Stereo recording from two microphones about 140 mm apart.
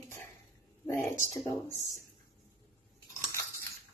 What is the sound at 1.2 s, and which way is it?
Speech, 55° right (ahead or behind).